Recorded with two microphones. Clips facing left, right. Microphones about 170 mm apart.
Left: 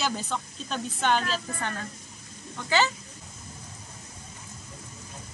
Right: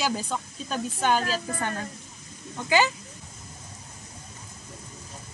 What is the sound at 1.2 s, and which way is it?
Speech, 40° right (ahead or behind).